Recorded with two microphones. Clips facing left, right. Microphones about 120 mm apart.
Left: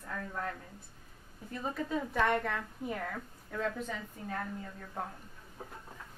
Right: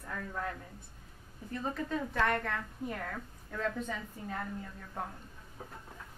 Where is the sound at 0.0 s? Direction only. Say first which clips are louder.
Even; centre (ahead or behind).